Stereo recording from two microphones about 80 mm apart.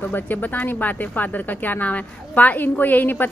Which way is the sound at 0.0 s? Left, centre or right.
Left.